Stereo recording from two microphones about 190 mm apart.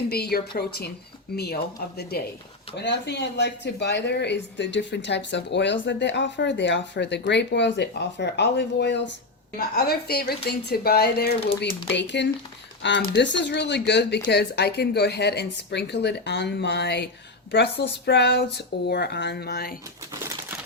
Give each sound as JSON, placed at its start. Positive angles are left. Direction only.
{"t": 0.1, "sound": "speech", "side_deg": 55}
{"t": 9.6, "sound": "speech", "side_deg": 55}